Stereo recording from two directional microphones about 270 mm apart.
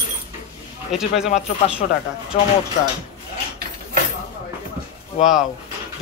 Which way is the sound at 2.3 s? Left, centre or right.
Left.